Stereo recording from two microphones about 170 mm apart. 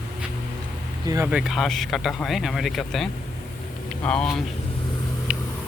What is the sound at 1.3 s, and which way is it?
Speech, 5° right (ahead or behind).